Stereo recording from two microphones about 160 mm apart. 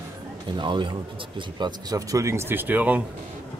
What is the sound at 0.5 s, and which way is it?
Speech, 30° right (ahead or behind).